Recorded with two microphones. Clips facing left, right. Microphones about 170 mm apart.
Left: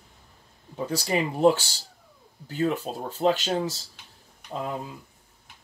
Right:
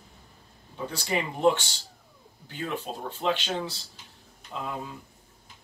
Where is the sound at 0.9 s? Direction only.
40° left (ahead or behind).